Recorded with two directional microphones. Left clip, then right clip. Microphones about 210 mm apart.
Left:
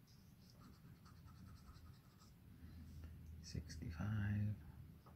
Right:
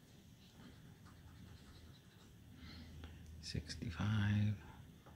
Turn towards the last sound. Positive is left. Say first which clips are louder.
# right 7 dB
turn(degrees=-20)  # may be behind; listen again after turning